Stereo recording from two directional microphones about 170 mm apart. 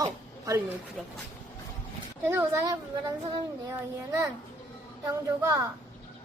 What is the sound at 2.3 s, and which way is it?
Speech, 20° right (ahead or behind).